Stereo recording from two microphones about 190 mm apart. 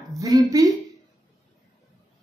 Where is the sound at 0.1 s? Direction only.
20° right (ahead or behind).